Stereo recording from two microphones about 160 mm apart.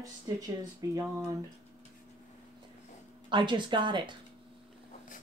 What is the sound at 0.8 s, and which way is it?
Speech, 20° right (ahead or behind).